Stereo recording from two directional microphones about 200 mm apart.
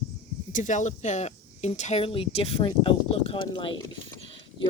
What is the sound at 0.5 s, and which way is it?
Speech, 40° left (ahead or behind).